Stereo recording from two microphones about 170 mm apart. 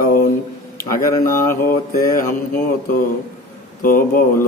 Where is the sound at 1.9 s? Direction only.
55° left (ahead or behind).